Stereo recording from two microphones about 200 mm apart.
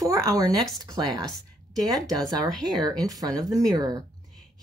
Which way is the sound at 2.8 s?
20° right (ahead or behind).